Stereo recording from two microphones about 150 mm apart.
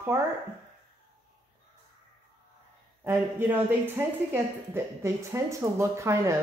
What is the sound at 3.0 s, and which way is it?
A woman's voice, 15° right (ahead or behind).